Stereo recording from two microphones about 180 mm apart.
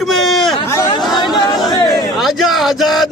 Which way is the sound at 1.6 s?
25° left (ahead or behind).